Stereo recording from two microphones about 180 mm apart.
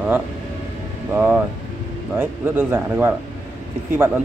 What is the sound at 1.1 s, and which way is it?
Speech, 10° right (ahead or behind).